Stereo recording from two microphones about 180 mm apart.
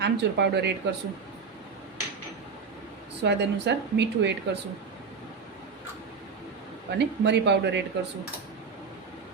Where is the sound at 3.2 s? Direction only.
70° right (ahead or behind).